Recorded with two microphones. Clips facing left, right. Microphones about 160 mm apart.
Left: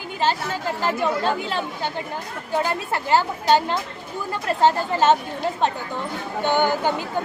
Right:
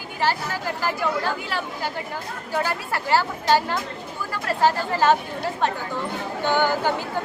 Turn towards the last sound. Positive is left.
turn(degrees=20)  # may be behind; listen again after turning